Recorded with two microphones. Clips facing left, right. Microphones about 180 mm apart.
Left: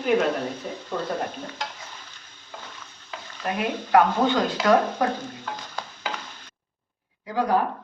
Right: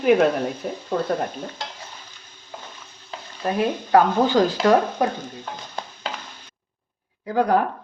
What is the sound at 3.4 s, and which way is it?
Speech, 30° right (ahead or behind).